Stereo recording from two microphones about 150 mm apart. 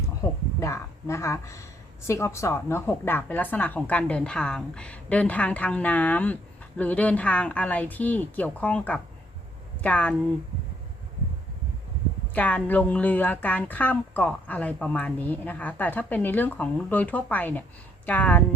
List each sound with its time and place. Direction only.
0.2 s a woman's voice: 20° left (ahead or behind)
12.3 s speech: 10° left (ahead or behind)